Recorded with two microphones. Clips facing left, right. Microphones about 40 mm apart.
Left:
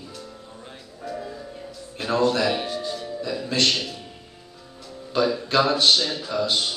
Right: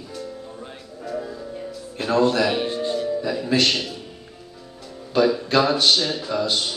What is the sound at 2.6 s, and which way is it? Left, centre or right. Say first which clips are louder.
Music: right 4 dB; right.